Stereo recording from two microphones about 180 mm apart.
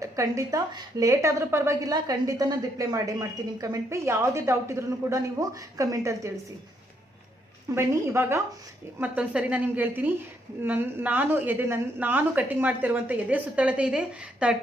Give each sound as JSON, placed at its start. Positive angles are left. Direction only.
{"t": 0.0, "sound": "a woman's voice", "side_deg": -15}
{"t": 7.7, "sound": "a woman's voice", "side_deg": -15}